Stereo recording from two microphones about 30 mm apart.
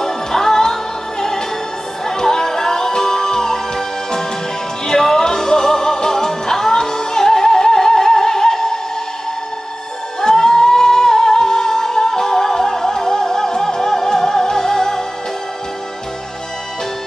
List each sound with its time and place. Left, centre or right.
0.0 s music: centre
2.0 s music: centre
10.2 s music: centre